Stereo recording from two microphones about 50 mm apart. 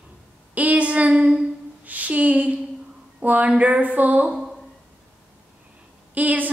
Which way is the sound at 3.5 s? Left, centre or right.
Right.